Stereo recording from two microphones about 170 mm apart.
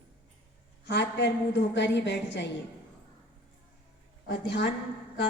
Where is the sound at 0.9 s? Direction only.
90° left.